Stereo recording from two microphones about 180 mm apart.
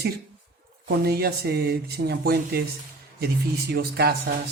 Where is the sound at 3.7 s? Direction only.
60° right (ahead or behind).